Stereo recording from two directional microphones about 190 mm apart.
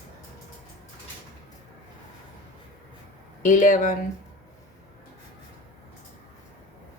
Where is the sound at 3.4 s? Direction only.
45° left (ahead or behind).